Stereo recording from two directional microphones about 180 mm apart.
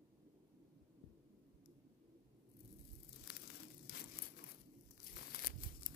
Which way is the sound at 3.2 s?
60° left (ahead or behind).